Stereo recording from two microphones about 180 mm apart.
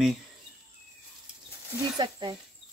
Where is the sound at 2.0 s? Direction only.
25° right (ahead or behind).